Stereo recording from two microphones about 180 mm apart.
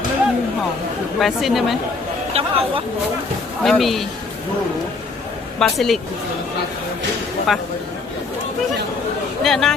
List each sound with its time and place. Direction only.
1.2 s speech: centre (ahead or behind)
2.3 s speech: 35° right (ahead or behind)
3.6 s speech: centre (ahead or behind)
5.5 s speech: centre (ahead or behind)
7.5 s speech: centre (ahead or behind)
9.4 s speech: centre (ahead or behind)